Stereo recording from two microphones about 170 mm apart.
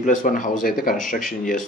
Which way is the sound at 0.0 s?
50° left (ahead or behind).